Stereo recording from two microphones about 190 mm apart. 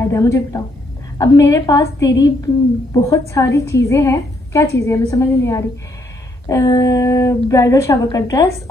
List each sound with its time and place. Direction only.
0.0 s a woman's voice: 15° left (ahead or behind)